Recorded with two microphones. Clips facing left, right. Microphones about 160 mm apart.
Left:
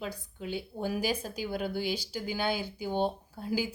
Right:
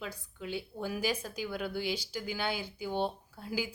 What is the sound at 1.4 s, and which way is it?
Speech, 40° left (ahead or behind).